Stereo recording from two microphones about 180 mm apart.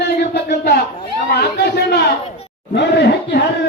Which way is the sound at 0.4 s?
60° left (ahead or behind).